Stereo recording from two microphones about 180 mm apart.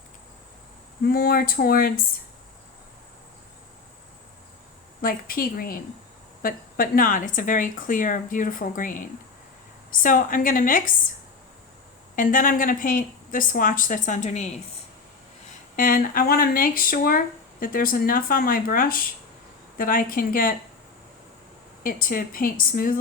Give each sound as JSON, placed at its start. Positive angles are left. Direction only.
{"t": 1.0, "sound": "speech", "side_deg": 55}
{"t": 5.0, "sound": "speech", "side_deg": 55}
{"t": 12.1, "sound": "speech", "side_deg": 50}
{"t": 15.7, "sound": "speech", "side_deg": 50}
{"t": 21.8, "sound": "speech", "side_deg": 50}